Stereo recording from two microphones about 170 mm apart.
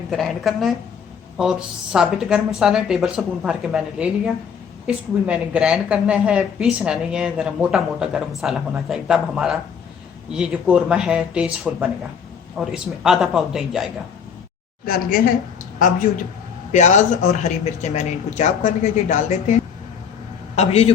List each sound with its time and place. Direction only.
0.1 s a woman's voice: centre (ahead or behind)
14.8 s a woman's voice: 60° left (ahead or behind)
16.7 s speech: 45° left (ahead or behind)
20.6 s a man's voice: 40° left (ahead or behind)